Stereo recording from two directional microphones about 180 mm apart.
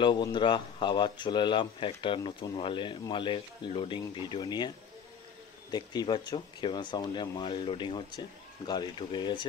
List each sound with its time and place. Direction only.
0.0 s speech: 25° left (ahead or behind)